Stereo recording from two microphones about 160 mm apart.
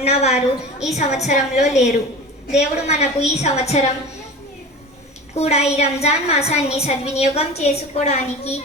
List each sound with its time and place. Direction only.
0.0 s a woman's voice: 40° left (ahead or behind)
5.3 s a woman's voice: 40° left (ahead or behind)